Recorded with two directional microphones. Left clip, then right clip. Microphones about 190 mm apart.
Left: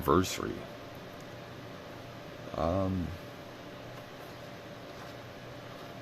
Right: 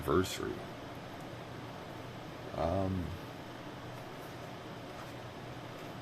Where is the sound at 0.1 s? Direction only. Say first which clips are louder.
Left 4 dB; 55° left (ahead or behind).